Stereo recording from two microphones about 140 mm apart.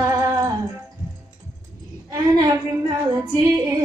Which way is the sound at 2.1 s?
30° right (ahead or behind).